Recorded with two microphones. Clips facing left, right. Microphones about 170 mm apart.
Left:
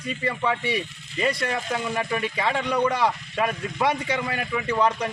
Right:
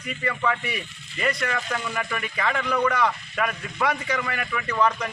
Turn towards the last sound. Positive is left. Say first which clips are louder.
# left 1 dB
turn(degrees=25)  # may be behind; listen again after turning